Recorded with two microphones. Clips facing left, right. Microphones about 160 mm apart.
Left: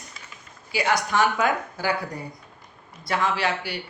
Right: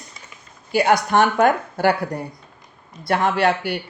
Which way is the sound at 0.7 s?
55° right (ahead or behind).